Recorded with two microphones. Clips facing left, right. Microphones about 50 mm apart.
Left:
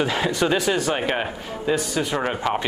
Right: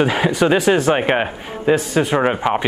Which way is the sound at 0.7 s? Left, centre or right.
Right.